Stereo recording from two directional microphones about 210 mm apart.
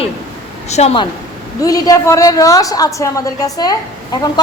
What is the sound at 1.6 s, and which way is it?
A woman's voice, 15° left (ahead or behind).